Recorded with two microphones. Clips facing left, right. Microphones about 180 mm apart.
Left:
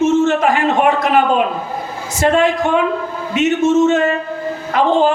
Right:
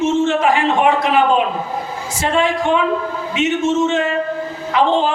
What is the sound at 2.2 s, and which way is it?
A man's voice, 45° left (ahead or behind).